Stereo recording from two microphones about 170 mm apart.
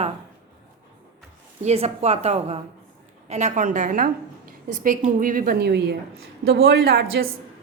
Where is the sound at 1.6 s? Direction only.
40° right (ahead or behind).